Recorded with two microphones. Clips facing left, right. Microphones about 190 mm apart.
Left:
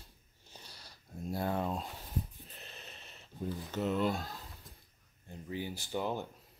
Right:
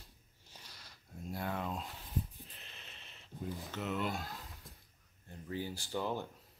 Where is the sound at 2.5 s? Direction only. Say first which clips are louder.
Left 5 dB; 40° left (ahead or behind).